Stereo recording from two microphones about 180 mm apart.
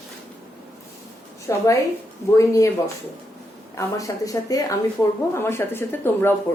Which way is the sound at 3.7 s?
20° left (ahead or behind).